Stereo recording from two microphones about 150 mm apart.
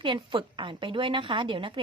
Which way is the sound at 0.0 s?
35° right (ahead or behind).